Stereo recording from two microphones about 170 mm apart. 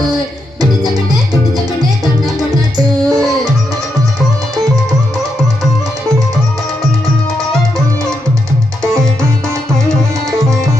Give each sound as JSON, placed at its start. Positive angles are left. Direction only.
{"t": 2.7, "sound": "music", "side_deg": -20}